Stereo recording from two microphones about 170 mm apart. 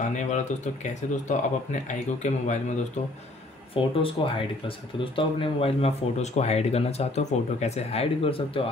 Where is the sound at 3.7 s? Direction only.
30° left (ahead or behind).